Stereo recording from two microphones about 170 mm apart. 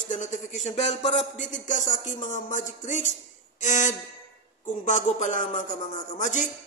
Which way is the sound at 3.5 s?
45° left (ahead or behind).